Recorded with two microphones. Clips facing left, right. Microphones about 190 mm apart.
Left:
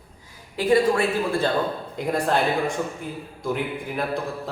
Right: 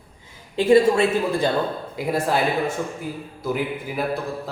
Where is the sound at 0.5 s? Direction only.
25° right (ahead or behind).